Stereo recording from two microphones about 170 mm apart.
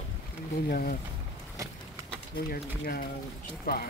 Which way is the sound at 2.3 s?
65° left (ahead or behind).